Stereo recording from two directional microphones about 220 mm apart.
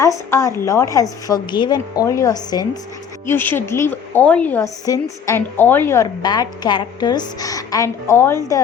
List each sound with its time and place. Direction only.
0.0 s a woman's voice: 15° left (ahead or behind)